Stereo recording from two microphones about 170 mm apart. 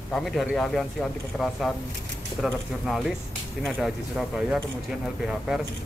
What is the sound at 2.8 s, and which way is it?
Speech, centre (ahead or behind).